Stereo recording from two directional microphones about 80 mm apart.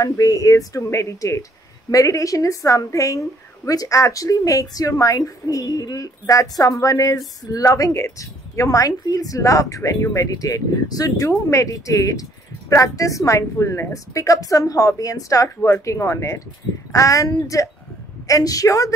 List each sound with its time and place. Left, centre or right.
0.0 s speech: left